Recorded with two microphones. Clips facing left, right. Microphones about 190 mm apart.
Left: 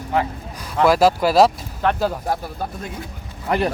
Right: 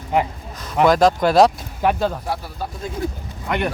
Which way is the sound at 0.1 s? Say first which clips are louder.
Right 1 dB; 15° right (ahead or behind).